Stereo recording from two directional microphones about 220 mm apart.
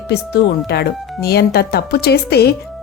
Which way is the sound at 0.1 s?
50° left (ahead or behind).